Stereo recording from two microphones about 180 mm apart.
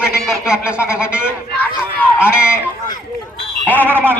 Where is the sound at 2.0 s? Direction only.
10° left (ahead or behind).